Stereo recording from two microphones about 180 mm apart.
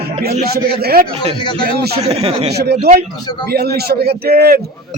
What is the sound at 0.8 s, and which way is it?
Speech, 55° right (ahead or behind).